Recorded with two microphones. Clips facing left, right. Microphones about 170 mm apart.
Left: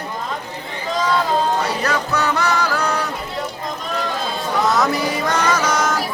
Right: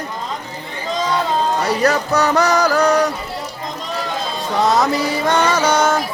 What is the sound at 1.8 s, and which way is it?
Music, 40° right (ahead or behind).